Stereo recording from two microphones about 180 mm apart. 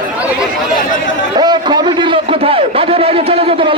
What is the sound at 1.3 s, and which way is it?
A man's voice, 25° right (ahead or behind).